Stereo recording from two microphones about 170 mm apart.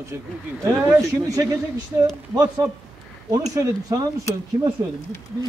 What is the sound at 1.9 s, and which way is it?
Speech, 20° right (ahead or behind).